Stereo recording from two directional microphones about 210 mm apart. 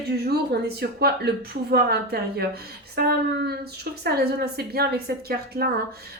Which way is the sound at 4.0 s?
50° right (ahead or behind).